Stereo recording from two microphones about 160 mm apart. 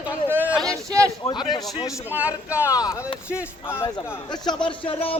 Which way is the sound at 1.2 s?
30° left (ahead or behind).